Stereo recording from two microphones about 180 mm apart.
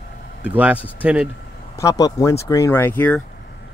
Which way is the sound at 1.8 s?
20° left (ahead or behind).